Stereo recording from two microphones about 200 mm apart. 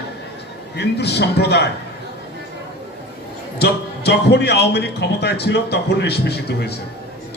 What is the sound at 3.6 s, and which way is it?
Speech, 55° left (ahead or behind).